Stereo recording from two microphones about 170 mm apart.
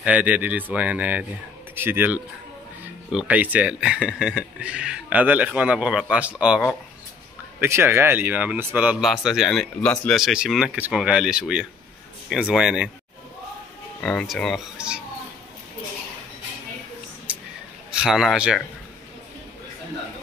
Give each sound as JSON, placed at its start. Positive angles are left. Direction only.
{"t": 0.0, "sound": "speech", "side_deg": -10}
{"t": 14.0, "sound": "speech", "side_deg": 0}
{"t": 17.3, "sound": "a sound", "side_deg": -10}
{"t": 17.9, "sound": "speech", "side_deg": -5}